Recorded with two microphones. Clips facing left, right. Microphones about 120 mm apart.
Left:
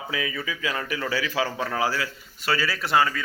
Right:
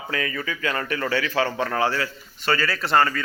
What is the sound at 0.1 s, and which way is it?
Speech, 5° left (ahead or behind).